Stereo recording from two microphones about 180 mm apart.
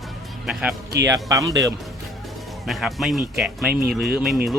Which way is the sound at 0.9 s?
20° right (ahead or behind).